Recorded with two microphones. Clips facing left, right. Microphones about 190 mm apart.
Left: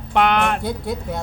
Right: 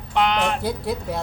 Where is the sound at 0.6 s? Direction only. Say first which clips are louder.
Even; centre (ahead or behind).